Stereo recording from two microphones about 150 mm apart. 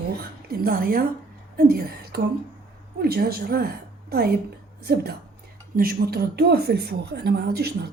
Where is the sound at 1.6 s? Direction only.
85° right.